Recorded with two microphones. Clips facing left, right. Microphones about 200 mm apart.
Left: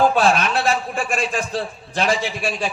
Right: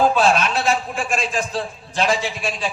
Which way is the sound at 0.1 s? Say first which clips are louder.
Even; 55° left (ahead or behind).